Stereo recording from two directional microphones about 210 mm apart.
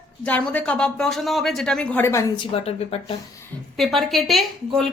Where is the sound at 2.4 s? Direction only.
30° left (ahead or behind).